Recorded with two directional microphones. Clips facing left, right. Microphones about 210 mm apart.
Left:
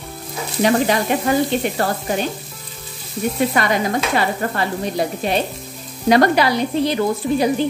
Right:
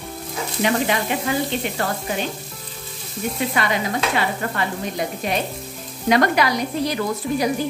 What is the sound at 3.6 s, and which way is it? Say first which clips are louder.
Speech: left 3 dB; 45° left (ahead or behind).